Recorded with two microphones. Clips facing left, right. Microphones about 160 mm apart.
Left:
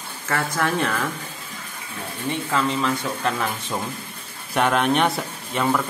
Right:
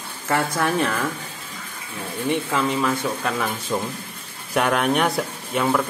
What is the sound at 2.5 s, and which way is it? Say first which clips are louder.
Speech: right 1 dB; 5° right (ahead or behind).